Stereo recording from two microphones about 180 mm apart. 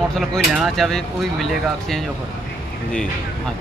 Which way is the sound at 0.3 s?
Centre (ahead or behind).